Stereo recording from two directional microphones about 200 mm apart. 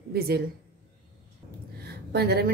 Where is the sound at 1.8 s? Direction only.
50° right (ahead or behind).